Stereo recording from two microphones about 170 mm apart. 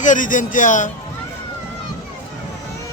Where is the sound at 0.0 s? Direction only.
50° left (ahead or behind).